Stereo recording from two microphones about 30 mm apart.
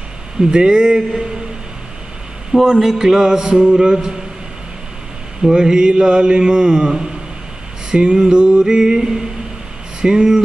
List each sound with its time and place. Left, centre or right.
0.4 s mantra: right
2.8 s mantra: centre
5.4 s mantra: right